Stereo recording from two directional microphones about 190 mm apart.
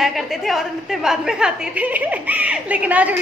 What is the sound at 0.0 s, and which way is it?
A woman's voice, centre (ahead or behind).